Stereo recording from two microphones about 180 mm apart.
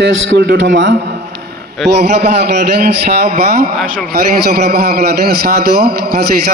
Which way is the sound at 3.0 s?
60° right (ahead or behind).